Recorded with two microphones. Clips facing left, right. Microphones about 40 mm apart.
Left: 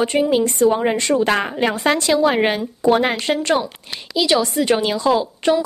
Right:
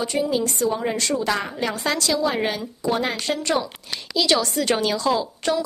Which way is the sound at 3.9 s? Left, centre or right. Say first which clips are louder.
Left 3 dB; centre.